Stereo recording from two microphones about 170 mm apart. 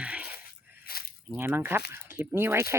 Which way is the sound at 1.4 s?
15° right (ahead or behind).